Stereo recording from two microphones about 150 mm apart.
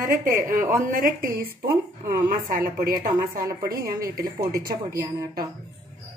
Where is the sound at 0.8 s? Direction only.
70° right (ahead or behind).